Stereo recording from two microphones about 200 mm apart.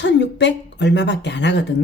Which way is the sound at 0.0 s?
60° left (ahead or behind).